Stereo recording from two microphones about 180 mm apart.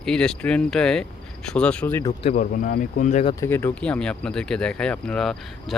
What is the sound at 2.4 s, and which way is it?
Speech, 50° left (ahead or behind).